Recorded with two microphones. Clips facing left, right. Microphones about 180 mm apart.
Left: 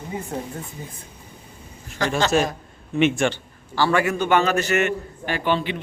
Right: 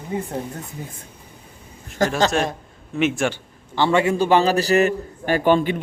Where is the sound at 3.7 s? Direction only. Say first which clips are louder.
Right 2 dB; 25° right (ahead or behind).